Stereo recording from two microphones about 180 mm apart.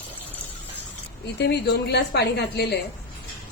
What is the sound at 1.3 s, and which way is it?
A woman's voice, 70° left (ahead or behind).